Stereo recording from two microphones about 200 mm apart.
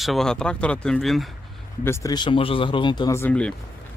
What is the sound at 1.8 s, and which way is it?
Speech, 15° left (ahead or behind).